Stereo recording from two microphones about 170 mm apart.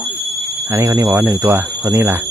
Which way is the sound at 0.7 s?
15° right (ahead or behind).